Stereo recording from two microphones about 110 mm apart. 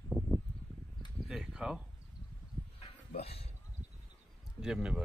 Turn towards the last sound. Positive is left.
turn(degrees=-5)  # may be behind; listen again after turning